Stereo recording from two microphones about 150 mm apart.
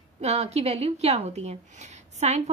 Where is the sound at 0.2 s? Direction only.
45° right (ahead or behind).